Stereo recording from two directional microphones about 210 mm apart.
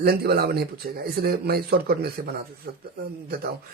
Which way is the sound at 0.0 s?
50° right (ahead or behind).